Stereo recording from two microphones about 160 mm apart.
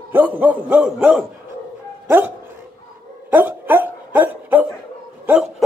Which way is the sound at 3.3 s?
10° right (ahead or behind).